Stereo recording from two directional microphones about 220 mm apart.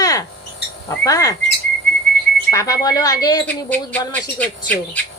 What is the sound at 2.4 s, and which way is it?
Speech, 15° left (ahead or behind).